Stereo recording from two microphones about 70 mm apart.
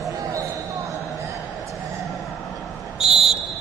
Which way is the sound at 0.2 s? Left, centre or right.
Right.